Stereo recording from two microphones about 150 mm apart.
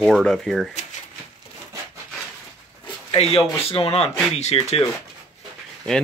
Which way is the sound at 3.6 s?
40° left (ahead or behind).